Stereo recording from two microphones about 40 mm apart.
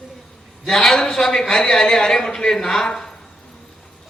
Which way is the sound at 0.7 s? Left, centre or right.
Centre.